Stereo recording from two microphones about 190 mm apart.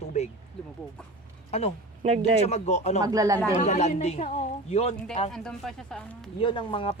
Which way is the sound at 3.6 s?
35° left (ahead or behind).